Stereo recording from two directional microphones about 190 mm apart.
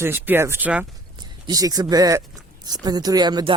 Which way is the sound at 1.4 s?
20° right (ahead or behind).